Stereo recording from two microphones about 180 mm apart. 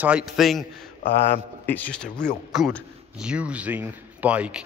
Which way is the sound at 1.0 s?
35° left (ahead or behind).